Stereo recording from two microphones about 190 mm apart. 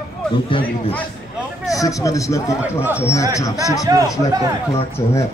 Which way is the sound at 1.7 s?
15° left (ahead or behind).